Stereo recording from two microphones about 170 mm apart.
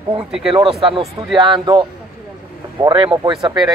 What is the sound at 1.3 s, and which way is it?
Speech, 25° right (ahead or behind).